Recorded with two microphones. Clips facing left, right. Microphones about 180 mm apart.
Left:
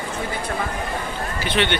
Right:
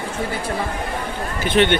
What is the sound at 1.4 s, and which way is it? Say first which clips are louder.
Speech: right 6 dB; 50° right (ahead or behind).